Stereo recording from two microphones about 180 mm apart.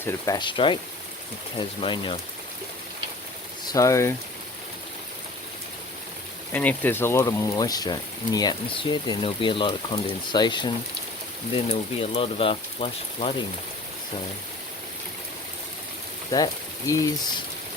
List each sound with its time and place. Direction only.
0.0 s speech: 20° left (ahead or behind)
3.7 s speech: 15° left (ahead or behind)
6.5 s speech: 10° left (ahead or behind); by 13.3 s 30° left (ahead or behind)
16.3 s speech: 20° left (ahead or behind)